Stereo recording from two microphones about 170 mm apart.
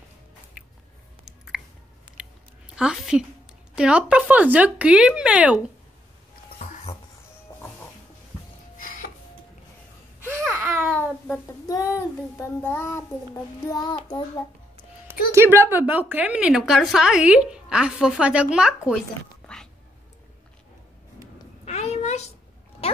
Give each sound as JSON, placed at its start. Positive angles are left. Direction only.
{"t": 1.2, "sound": "chewing", "side_deg": -5}
{"t": 2.7, "sound": "a woman's voice", "side_deg": -5}
{"t": 10.4, "sound": "babbling", "side_deg": 5}
{"t": 11.6, "sound": "child singing", "side_deg": 20}
{"t": 15.3, "sound": "a woman's voice", "side_deg": -15}
{"t": 19.4, "sound": "a sound", "side_deg": 5}
{"t": 21.6, "sound": "a sound", "side_deg": 40}